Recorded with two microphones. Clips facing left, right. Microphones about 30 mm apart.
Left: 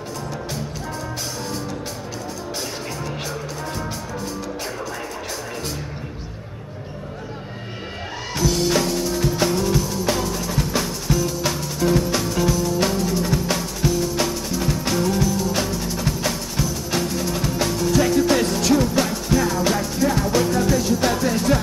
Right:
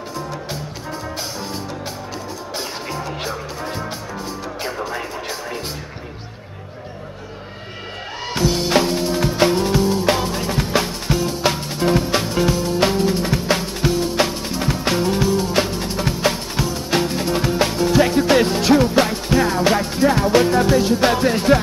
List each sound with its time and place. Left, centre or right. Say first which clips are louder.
2.9 s music: right 3 dB; right
8.3 s music: right 2 dB; right